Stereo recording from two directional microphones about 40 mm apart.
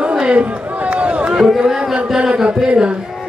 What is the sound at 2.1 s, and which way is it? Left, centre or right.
Chant, right.